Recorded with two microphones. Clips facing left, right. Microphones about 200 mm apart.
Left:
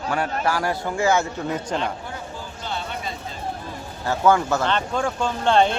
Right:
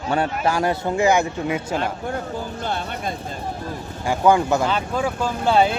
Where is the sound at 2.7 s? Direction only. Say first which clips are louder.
Right 1 dB; 50° right (ahead or behind).